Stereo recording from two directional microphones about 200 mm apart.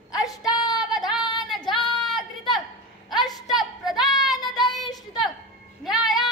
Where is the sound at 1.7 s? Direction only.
Centre (ahead or behind).